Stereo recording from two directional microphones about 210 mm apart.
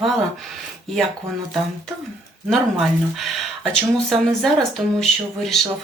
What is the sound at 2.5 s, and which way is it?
Speech, centre (ahead or behind).